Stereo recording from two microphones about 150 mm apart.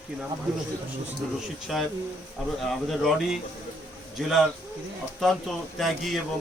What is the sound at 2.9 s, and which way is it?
Speech, centre (ahead or behind).